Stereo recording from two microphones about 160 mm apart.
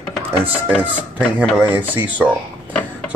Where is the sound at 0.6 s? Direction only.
5° right (ahead or behind).